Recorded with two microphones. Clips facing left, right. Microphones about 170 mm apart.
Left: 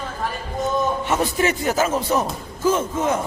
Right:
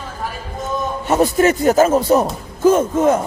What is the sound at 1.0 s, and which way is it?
A man's voice, 40° right (ahead or behind).